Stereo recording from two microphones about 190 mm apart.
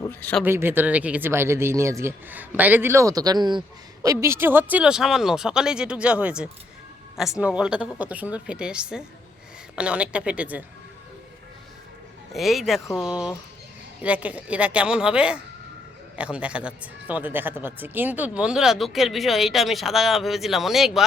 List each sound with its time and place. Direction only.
0.1 s speech: 10° left (ahead or behind)
0.4 s speech: 10° right (ahead or behind)
12.3 s speech: centre (ahead or behind)